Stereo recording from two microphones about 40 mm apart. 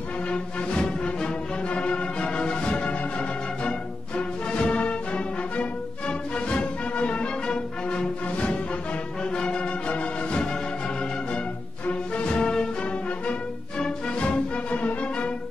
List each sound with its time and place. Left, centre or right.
0.3 s music: left
9.2 s music: left
11.8 s music: left
13.7 s music: left
14.7 s music: left